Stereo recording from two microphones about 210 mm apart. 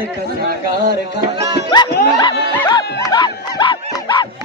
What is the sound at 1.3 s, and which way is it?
Music, 20° right (ahead or behind).